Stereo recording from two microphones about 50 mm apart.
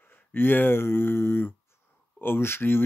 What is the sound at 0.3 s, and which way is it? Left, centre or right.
Speech, left.